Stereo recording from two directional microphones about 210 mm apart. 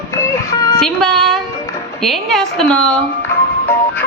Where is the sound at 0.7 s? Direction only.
Centre (ahead or behind).